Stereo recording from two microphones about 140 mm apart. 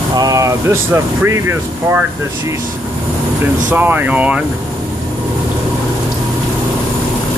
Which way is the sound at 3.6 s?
15° right (ahead or behind).